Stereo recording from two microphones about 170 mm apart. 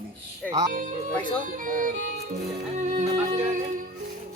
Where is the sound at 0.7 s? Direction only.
50° right (ahead or behind).